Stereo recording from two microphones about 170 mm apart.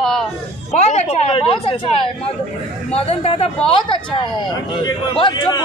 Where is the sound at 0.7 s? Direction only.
40° left (ahead or behind).